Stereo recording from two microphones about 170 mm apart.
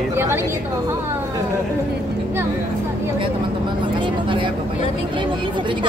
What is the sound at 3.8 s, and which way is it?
Vehicle, 30° right (ahead or behind).